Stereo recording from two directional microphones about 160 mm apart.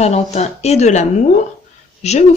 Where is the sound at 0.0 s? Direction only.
40° left (ahead or behind).